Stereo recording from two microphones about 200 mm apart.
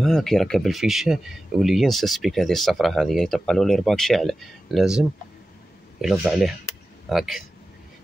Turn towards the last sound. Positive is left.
turn(degrees=0)  # may be behind; listen again after turning